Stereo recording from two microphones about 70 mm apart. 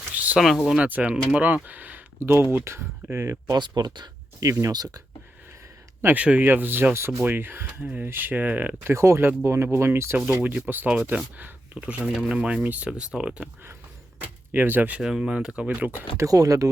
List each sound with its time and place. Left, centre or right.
0.1 s a sound: right
0.3 s speech: centre
0.8 s speech: right
2.1 s speech: right
3.5 s speech: right
4.4 s speech: right
4.7 s speech: right
6.1 s speech: right
8.9 s speech: right
10.4 s speech: right
14.2 s speech: right
15.0 s speech: centre
16.1 s speech: right